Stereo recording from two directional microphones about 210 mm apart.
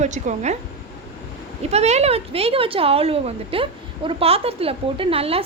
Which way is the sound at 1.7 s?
30° right (ahead or behind).